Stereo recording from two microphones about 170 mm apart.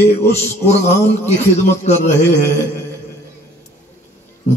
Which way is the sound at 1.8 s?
40° left (ahead or behind).